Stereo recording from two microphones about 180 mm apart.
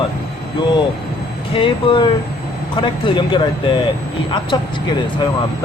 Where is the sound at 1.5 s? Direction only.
30° left (ahead or behind).